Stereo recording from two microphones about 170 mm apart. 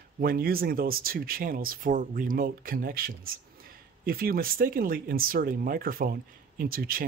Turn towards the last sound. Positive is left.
turn(degrees=-60)  # may be behind; listen again after turning